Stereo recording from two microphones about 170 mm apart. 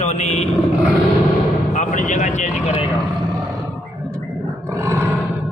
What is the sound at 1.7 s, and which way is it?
Speech, 45° left (ahead or behind).